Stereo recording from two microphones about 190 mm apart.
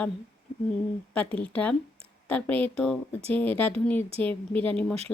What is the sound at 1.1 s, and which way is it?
Speech, 5° left (ahead or behind).